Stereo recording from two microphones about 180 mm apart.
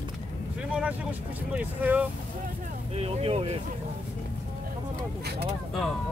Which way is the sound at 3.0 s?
35° right (ahead or behind).